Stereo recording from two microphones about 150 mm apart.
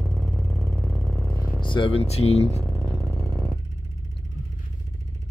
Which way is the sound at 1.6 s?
35° left (ahead or behind).